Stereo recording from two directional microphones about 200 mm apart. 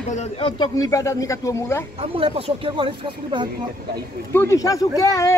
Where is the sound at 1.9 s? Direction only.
30° right (ahead or behind).